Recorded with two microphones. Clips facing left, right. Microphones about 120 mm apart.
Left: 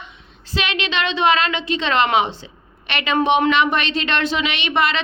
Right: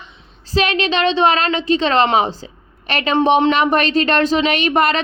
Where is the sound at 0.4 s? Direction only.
40° right (ahead or behind).